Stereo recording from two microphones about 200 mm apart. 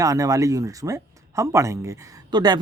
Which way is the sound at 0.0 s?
15° right (ahead or behind).